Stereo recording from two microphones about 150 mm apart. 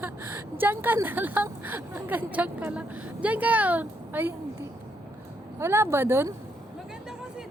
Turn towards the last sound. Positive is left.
turn(degrees=-15)  # may be behind; listen again after turning